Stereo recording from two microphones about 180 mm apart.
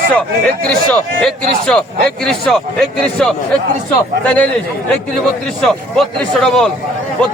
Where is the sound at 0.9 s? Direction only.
5° left (ahead or behind).